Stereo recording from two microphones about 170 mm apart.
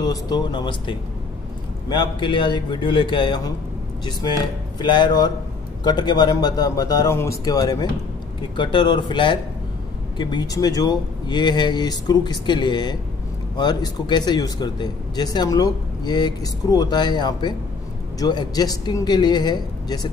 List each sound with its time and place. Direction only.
0.0 s speech: 25° left (ahead or behind)
4.7 s speech: 25° left (ahead or behind)